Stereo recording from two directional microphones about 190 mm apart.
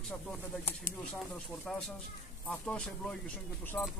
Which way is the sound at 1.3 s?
5° left (ahead or behind).